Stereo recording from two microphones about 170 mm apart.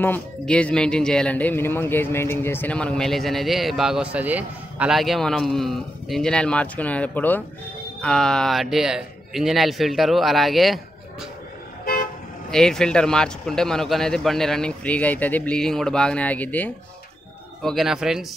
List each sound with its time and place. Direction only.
0.0 s speech: 10° left (ahead or behind)
11.8 s toot: 60° left (ahead or behind)
12.4 s speech: 5° left (ahead or behind)
17.6 s speech: centre (ahead or behind)